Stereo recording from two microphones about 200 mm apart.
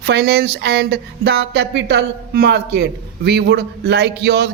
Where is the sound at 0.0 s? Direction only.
50° right (ahead or behind).